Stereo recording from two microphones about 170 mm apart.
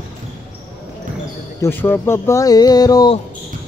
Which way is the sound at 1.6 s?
10° left (ahead or behind).